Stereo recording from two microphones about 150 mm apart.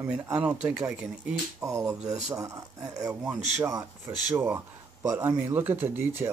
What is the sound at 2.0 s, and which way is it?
Speech, 50° right (ahead or behind).